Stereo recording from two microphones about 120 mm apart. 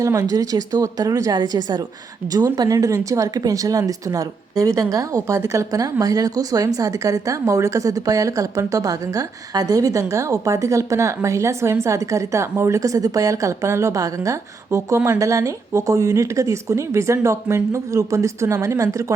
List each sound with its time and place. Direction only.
0.0 s a woman's voice: 25° right (ahead or behind)